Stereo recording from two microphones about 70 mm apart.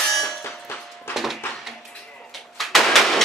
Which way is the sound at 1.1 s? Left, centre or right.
Centre.